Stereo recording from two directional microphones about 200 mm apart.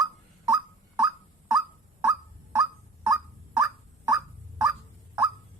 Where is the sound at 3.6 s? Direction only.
15° right (ahead or behind).